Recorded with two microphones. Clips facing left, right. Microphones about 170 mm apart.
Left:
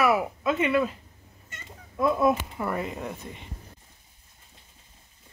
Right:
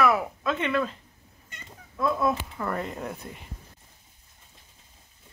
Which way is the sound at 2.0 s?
15° left (ahead or behind).